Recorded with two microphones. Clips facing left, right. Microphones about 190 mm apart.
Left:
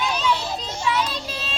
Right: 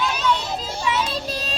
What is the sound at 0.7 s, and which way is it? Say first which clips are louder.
Child singing: even; 25° right (ahead or behind).